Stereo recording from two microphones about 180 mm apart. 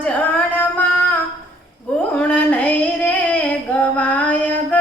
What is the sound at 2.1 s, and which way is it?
Female singing, 10° left (ahead or behind).